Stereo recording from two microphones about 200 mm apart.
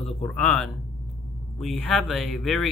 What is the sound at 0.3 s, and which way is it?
Speech, centre (ahead or behind).